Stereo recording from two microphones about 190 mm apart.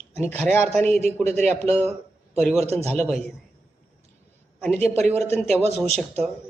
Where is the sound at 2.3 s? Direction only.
Centre (ahead or behind).